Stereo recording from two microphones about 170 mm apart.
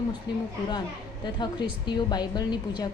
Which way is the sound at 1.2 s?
25° left (ahead or behind).